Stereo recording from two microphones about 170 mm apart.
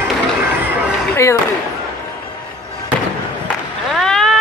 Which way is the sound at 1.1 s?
15° left (ahead or behind).